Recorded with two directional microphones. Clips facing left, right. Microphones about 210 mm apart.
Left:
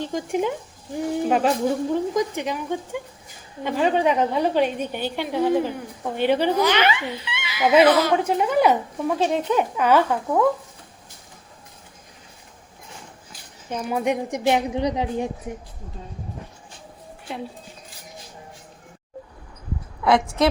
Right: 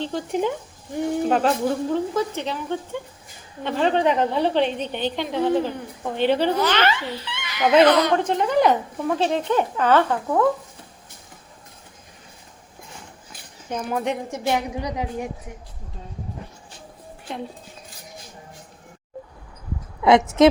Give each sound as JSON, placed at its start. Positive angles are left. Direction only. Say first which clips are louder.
{"t": 0.0, "sound": "a woman's voice", "louder": "even", "side_deg": 10}
{"t": 13.7, "sound": "a woman's voice", "louder": "left 2 dB", "side_deg": 5}
{"t": 20.1, "sound": "a woman's voice", "louder": "right 5 dB", "side_deg": -20}